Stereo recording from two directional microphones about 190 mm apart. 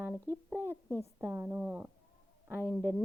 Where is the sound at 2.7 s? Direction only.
5° left (ahead or behind).